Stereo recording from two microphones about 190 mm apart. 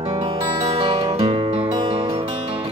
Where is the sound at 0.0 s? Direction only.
30° right (ahead or behind).